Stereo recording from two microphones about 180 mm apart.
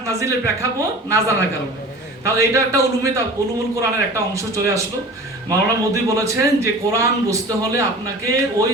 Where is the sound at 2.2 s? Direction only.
15° right (ahead or behind).